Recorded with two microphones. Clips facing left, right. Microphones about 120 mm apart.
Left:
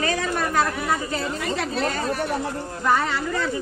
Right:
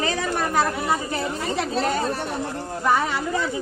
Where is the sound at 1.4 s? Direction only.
30° right (ahead or behind).